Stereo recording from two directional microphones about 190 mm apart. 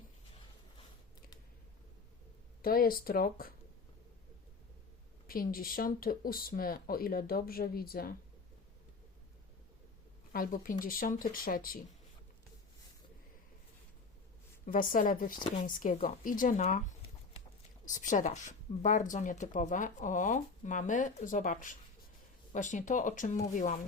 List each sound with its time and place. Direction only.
2.6 s speech: 50° left (ahead or behind)
5.3 s speech: 50° left (ahead or behind)
10.3 s speech: 45° left (ahead or behind)
14.7 s speech: 45° left (ahead or behind)
17.8 s speech: 40° left (ahead or behind)